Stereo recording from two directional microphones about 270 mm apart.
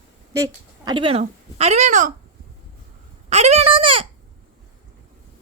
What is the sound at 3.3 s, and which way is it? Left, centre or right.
Speech, right.